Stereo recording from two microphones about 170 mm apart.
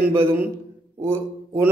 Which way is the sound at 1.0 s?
15° right (ahead or behind).